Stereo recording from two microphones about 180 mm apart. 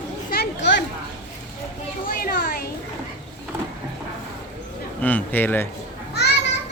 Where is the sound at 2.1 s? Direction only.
55° left (ahead or behind).